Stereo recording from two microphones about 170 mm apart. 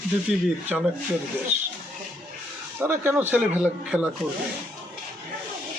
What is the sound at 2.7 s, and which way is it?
Speech, 10° right (ahead or behind).